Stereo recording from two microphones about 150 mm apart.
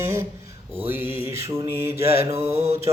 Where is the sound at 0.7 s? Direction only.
15° right (ahead or behind).